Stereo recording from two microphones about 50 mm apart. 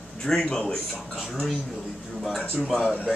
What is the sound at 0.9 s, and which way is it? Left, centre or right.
A man's voice, centre.